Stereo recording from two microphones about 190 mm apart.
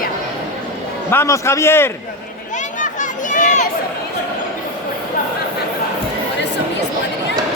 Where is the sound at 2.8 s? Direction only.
40° left (ahead or behind).